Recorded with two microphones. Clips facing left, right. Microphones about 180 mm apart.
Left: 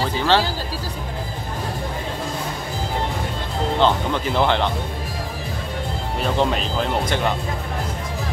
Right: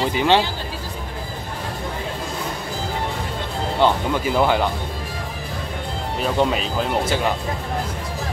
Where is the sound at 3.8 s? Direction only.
10° right (ahead or behind).